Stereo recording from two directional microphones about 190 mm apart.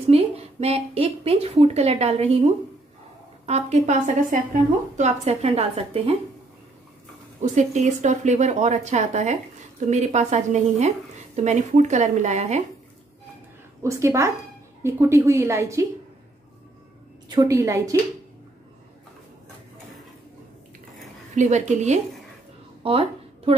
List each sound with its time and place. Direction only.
0.1 s a sound: 35° right (ahead or behind)
3.4 s speech: 35° right (ahead or behind)
7.4 s speech: 40° right (ahead or behind)
13.8 s a woman's voice: 15° right (ahead or behind)
17.3 s a woman's voice: 15° right (ahead or behind)
21.4 s speech: 40° right (ahead or behind)
22.8 s a sound: 30° right (ahead or behind)